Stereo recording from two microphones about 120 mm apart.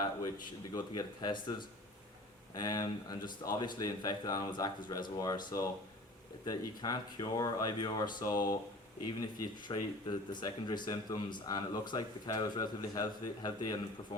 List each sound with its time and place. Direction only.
0.2 s speech: 30° left (ahead or behind)
9.6 s speech: 35° left (ahead or behind)